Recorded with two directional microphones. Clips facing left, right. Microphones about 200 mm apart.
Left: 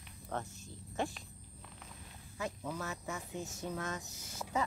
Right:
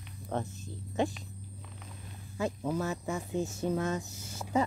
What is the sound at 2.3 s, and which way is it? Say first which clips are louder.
Speech: right 8 dB; 30° right (ahead or behind).